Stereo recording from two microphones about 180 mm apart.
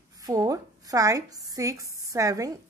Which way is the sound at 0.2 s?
20° right (ahead or behind).